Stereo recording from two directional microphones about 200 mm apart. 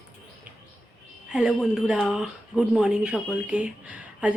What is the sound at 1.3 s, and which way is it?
Speech, 5° right (ahead or behind).